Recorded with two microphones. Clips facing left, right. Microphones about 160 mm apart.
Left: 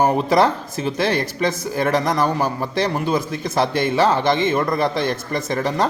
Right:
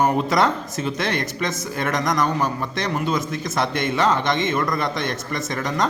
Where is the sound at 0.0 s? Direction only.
30° left (ahead or behind).